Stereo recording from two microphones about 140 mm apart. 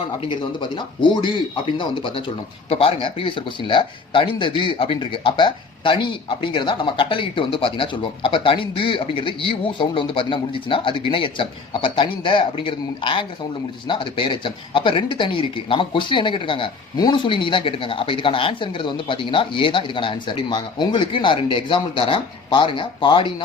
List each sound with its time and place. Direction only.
0.2 s speech: 35° left (ahead or behind)